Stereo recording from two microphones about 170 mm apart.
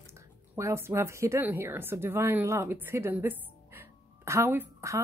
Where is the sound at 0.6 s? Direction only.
15° right (ahead or behind).